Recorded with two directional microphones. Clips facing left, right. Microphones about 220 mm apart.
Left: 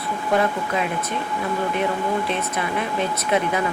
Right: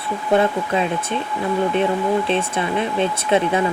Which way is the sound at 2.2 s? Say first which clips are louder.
Right 4 dB; 30° right (ahead or behind).